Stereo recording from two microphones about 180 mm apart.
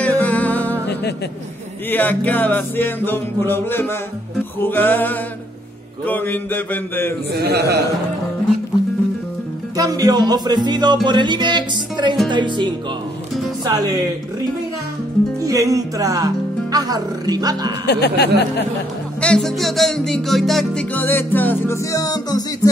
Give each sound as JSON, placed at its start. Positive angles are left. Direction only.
{"t": 0.0, "sound": "music", "side_deg": 10}
{"t": 1.9, "sound": "music", "side_deg": 10}
{"t": 7.3, "sound": "a man's voice", "side_deg": -60}
{"t": 9.8, "sound": "music", "side_deg": -20}
{"t": 15.4, "sound": "music", "side_deg": -20}
{"t": 17.8, "sound": "speech", "side_deg": 65}
{"t": 19.2, "sound": "music", "side_deg": 5}